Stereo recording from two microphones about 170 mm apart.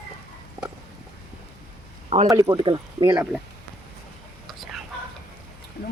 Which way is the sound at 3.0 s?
10° right (ahead or behind).